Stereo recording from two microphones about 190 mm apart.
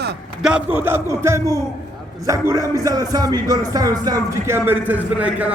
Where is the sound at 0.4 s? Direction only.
10° right (ahead or behind).